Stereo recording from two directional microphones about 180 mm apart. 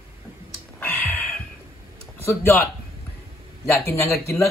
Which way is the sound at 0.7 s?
10° left (ahead or behind).